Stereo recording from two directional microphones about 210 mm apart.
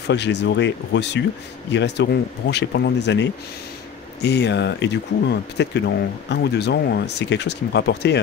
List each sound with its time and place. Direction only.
0.1 s speech: 55° left (ahead or behind)